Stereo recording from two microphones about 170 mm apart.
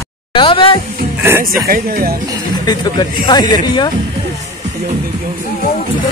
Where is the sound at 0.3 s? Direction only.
30° left (ahead or behind).